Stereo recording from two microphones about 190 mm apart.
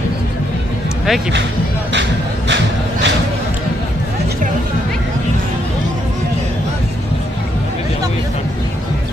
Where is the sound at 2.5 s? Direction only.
70° right (ahead or behind).